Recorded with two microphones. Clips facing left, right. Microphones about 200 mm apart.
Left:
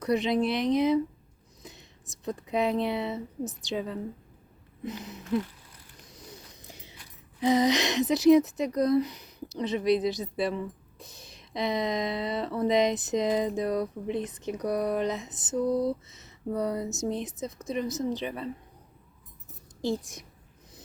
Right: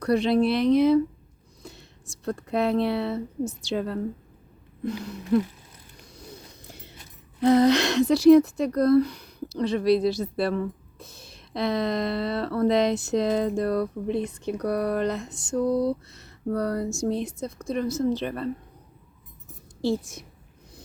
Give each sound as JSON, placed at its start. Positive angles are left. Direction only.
{"t": 0.0, "sound": "speech", "side_deg": 20}
{"t": 3.8, "sound": "a woman's voice", "side_deg": -70}
{"t": 4.9, "sound": "a sound", "side_deg": 20}
{"t": 7.5, "sound": "speech", "side_deg": 15}
{"t": 14.8, "sound": "a sound", "side_deg": 20}
{"t": 16.9, "sound": "speech", "side_deg": 20}
{"t": 19.8, "sound": "speech", "side_deg": 15}